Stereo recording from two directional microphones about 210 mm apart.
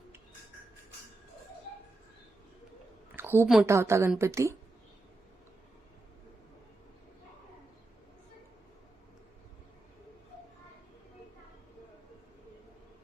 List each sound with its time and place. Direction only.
3.2 s a woman's voice: 10° right (ahead or behind)